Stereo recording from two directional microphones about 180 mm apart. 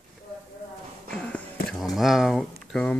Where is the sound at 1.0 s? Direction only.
5° left (ahead or behind).